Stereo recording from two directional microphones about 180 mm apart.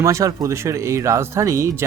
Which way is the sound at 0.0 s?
15° right (ahead or behind).